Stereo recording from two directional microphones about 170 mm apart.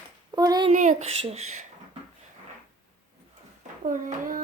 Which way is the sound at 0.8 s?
45° right (ahead or behind).